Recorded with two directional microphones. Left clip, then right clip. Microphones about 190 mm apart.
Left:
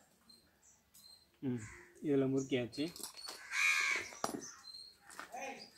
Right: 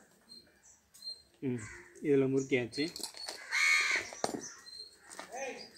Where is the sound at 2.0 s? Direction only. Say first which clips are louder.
Right 5 dB; 10° left (ahead or behind).